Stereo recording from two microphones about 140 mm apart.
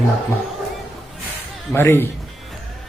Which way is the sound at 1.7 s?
15° left (ahead or behind).